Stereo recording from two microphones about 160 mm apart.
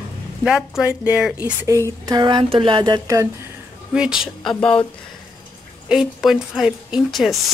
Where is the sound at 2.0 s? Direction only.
25° right (ahead or behind).